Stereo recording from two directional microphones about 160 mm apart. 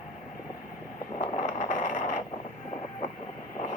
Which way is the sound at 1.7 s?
50° left (ahead or behind).